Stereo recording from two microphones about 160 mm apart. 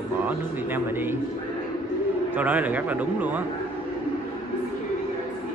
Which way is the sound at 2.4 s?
10° right (ahead or behind).